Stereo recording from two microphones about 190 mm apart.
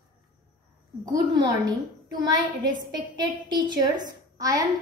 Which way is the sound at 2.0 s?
20° right (ahead or behind).